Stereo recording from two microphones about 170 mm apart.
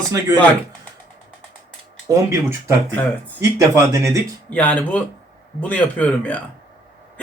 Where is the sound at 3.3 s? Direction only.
15° right (ahead or behind).